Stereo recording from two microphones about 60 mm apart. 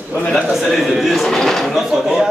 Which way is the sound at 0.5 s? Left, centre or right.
Centre.